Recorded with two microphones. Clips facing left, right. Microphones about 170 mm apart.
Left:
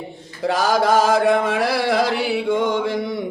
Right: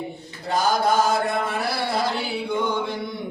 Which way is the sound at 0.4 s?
90° left.